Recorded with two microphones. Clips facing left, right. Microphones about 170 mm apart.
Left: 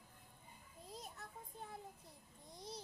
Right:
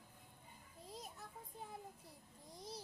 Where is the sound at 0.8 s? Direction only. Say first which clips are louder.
Even; centre (ahead or behind).